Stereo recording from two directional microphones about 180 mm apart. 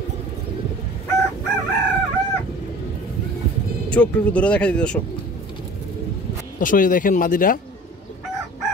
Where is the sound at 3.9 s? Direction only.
5° left (ahead or behind).